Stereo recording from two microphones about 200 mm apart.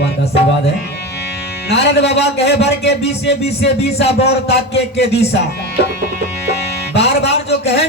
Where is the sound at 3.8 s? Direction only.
30° left (ahead or behind).